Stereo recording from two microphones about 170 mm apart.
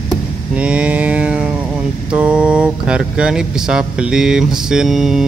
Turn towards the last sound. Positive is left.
turn(degrees=0)  # may be behind; listen again after turning